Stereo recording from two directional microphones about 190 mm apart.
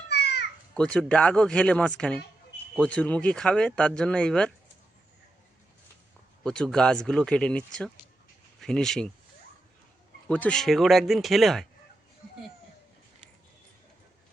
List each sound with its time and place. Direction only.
0.1 s children playing: 60° left (ahead or behind)
0.7 s speech: 5° left (ahead or behind)
6.4 s speech: 5° left (ahead or behind)
10.2 s speech: 5° left (ahead or behind)